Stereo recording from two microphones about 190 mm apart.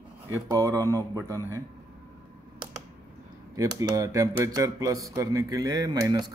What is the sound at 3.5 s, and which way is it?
Speech, 15° right (ahead or behind).